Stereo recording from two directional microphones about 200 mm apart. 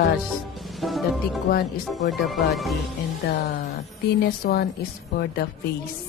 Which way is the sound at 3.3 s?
55° left (ahead or behind).